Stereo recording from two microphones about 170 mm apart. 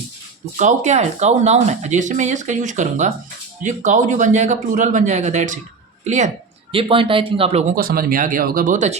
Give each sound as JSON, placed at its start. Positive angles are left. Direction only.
{"t": 0.6, "sound": "speech", "side_deg": -45}
{"t": 7.8, "sound": "speech", "side_deg": -60}